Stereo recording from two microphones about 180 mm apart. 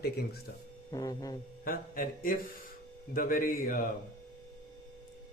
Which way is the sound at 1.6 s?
50° left (ahead or behind).